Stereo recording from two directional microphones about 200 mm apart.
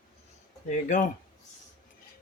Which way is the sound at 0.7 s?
40° left (ahead or behind).